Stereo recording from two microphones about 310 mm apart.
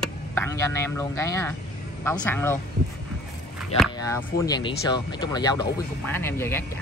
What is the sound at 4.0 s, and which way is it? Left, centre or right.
Speech, centre.